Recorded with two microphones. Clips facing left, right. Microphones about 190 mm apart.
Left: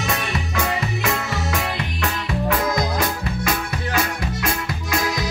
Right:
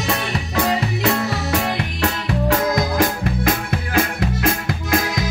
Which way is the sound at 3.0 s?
50° right (ahead or behind).